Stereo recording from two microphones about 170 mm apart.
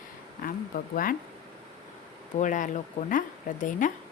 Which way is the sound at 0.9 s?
55° left (ahead or behind).